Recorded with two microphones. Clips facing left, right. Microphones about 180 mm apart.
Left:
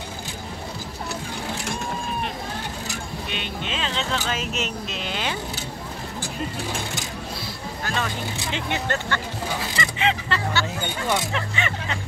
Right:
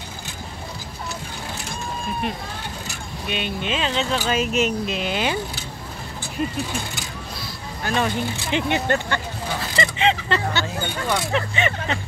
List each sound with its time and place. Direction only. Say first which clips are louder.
3.3 s speech: right 8 dB; 10° right (ahead or behind)
7.8 s speech: right 6 dB; 15° right (ahead or behind)